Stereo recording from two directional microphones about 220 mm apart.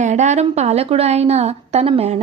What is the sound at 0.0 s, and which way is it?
A woman's voice, 30° right (ahead or behind).